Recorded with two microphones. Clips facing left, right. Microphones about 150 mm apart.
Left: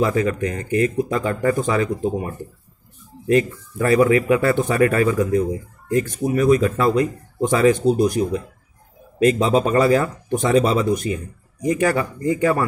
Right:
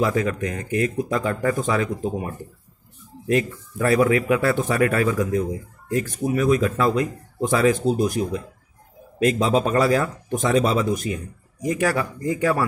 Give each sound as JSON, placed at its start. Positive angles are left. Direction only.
{"t": 0.0, "sound": "speech", "side_deg": 0}
{"t": 3.3, "sound": "speech", "side_deg": 0}
{"t": 9.2, "sound": "speech", "side_deg": 0}